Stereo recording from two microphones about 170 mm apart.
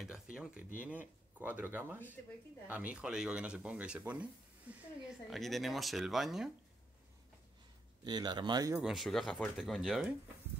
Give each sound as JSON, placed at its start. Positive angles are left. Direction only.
{"t": 0.0, "sound": "speech", "side_deg": -5}
{"t": 8.0, "sound": "speech", "side_deg": -25}
{"t": 8.7, "sound": "speech", "side_deg": 0}